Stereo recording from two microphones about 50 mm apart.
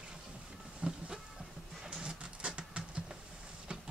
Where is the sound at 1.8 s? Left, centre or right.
Centre.